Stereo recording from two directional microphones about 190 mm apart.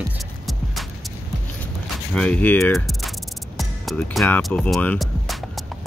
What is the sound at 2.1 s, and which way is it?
Speech, 5° left (ahead or behind).